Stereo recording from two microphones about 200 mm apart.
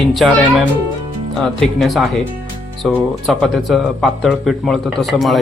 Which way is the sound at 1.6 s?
Centre (ahead or behind).